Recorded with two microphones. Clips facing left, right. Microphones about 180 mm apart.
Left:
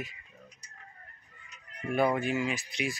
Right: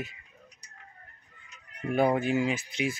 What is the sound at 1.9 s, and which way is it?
Speech, 20° right (ahead or behind).